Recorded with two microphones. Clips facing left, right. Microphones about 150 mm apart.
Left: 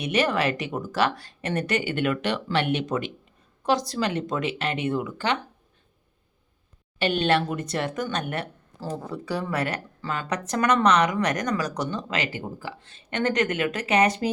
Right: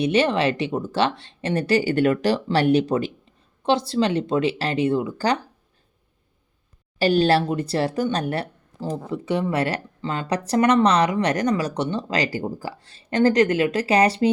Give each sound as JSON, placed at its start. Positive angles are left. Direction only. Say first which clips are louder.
{"t": 0.0, "sound": "speech", "louder": "right 4 dB", "side_deg": -30}
{"t": 7.0, "sound": "speech", "louder": "right 5 dB", "side_deg": -35}
{"t": 8.8, "sound": "speech", "louder": "right 4 dB", "side_deg": -20}